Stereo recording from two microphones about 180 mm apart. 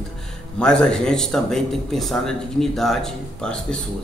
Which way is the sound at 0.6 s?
5° left (ahead or behind).